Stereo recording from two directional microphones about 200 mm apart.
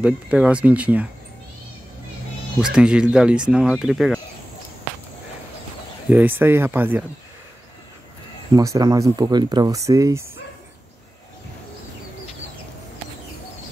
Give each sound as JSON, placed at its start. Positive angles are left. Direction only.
{"t": 0.0, "sound": "speech", "side_deg": -5}
{"t": 2.6, "sound": "speech", "side_deg": -5}
{"t": 6.0, "sound": "speech", "side_deg": -10}
{"t": 8.5, "sound": "speech", "side_deg": -15}